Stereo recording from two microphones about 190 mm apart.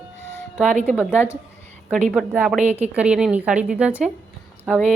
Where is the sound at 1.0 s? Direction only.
10° left (ahead or behind).